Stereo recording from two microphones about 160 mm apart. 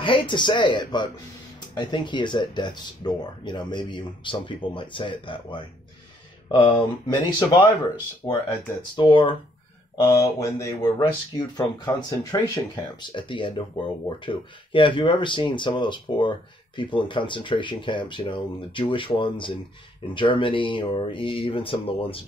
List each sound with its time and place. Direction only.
0.0 s speech: 30° left (ahead or behind)
9.9 s speech: 15° left (ahead or behind); by 22.2 s 35° left (ahead or behind)